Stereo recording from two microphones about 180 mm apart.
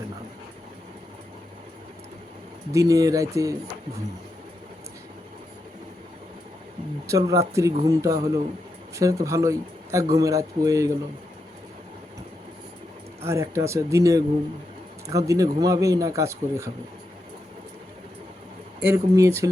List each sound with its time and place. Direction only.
2.7 s speech: 20° right (ahead or behind)
7.1 s speech: 20° right (ahead or behind)
13.2 s speech: 15° right (ahead or behind)
18.9 s speech: 15° right (ahead or behind)